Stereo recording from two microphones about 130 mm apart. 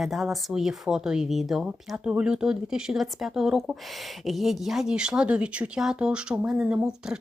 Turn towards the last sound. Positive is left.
turn(degrees=-5)  # may be behind; listen again after turning